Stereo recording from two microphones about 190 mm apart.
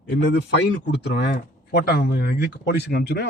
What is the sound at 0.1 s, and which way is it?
A man's voice, 65° left (ahead or behind).